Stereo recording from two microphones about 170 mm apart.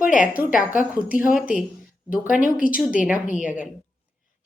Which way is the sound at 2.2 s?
50° left (ahead or behind).